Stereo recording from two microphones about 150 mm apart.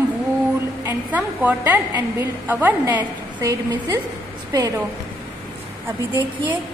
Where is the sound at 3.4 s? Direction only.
20° right (ahead or behind).